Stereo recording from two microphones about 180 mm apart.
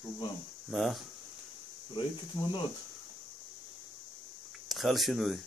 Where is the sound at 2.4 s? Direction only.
15° left (ahead or behind).